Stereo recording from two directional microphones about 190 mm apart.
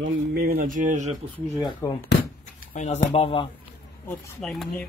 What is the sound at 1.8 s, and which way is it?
Speech, 15° left (ahead or behind).